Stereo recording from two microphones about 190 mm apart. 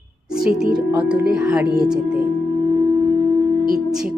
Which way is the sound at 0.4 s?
5° right (ahead or behind).